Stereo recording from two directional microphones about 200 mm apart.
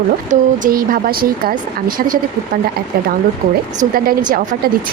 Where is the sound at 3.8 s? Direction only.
45° right (ahead or behind).